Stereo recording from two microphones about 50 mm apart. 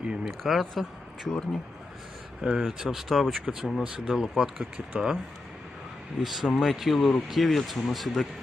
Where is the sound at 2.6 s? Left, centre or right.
Centre.